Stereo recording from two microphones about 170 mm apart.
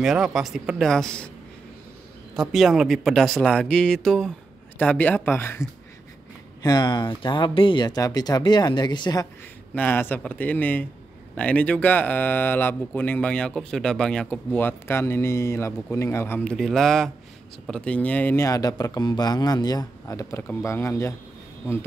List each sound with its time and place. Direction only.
0.0 s speech: 5° right (ahead or behind)
2.3 s speech: centre (ahead or behind)
6.6 s speech: 25° left (ahead or behind)
9.8 s speech: 10° left (ahead or behind)